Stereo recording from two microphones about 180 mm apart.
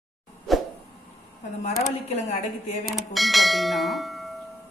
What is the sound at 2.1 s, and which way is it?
Speech, 40° left (ahead or behind).